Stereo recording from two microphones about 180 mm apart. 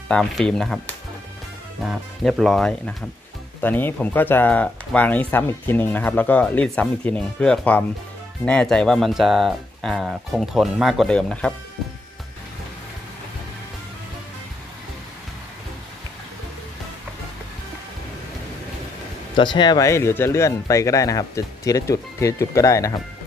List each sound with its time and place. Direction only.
0.1 s speech: 5° left (ahead or behind)
19.3 s speech: 25° left (ahead or behind)